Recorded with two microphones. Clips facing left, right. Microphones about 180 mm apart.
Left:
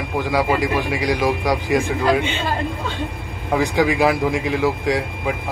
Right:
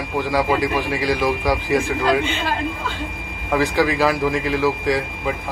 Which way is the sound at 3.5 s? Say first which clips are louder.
Left 1 dB; 15° left (ahead or behind).